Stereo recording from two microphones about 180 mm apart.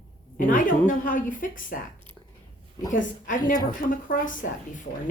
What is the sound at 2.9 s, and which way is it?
Speech, 45° left (ahead or behind).